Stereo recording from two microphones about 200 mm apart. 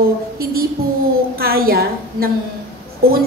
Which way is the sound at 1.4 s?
50° right (ahead or behind).